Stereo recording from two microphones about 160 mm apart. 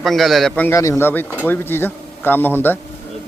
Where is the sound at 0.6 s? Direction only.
20° left (ahead or behind).